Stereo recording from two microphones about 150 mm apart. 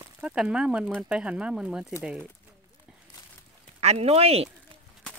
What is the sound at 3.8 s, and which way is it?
Speech, 45° right (ahead or behind).